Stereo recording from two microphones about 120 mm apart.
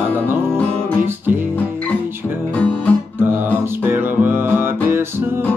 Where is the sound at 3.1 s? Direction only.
15° right (ahead or behind).